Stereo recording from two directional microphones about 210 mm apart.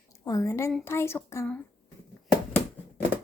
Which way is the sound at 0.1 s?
15° left (ahead or behind).